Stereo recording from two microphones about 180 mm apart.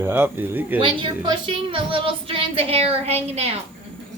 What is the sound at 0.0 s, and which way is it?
Speech, 10° right (ahead or behind).